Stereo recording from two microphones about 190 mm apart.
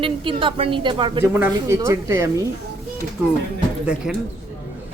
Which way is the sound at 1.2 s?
10° right (ahead or behind).